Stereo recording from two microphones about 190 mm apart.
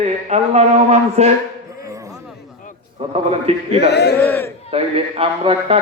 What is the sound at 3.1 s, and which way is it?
Speech, 30° right (ahead or behind).